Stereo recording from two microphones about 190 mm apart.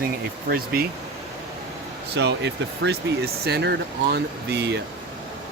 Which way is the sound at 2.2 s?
65° right (ahead or behind).